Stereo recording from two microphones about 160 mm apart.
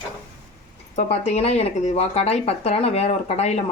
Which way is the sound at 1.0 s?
40° left (ahead or behind).